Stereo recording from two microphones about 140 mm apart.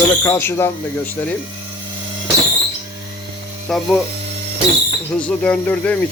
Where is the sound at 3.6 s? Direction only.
Centre (ahead or behind).